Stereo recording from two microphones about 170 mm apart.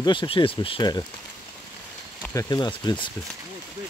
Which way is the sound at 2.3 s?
25° left (ahead or behind).